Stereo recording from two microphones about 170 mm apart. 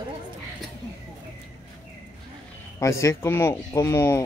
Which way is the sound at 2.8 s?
20° left (ahead or behind).